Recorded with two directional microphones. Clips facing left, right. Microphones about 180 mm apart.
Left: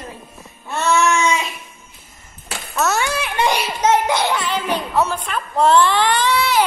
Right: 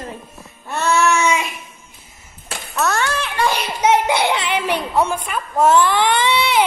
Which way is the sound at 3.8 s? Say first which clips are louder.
Right 2 dB; 10° right (ahead or behind).